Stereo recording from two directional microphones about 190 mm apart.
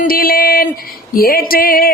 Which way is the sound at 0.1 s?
50° left (ahead or behind).